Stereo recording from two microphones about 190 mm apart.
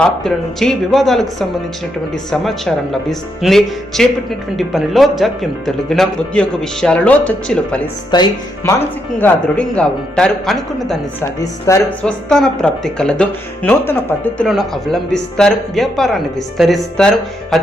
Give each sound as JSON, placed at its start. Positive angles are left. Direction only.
{"t": 0.0, "sound": "speech", "side_deg": 5}
{"t": 8.1, "sound": "speech", "side_deg": 20}
{"t": 9.2, "sound": "speech", "side_deg": 5}
{"t": 11.2, "sound": "speech", "side_deg": 15}
{"t": 12.0, "sound": "speech", "side_deg": 5}